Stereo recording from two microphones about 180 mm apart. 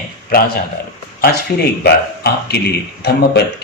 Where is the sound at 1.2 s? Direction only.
60° left (ahead or behind).